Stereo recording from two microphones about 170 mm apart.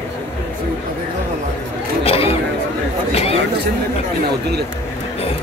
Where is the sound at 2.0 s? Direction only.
35° left (ahead or behind).